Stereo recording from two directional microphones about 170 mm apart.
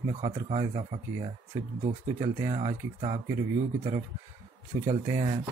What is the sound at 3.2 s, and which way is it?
Speech, 15° right (ahead or behind).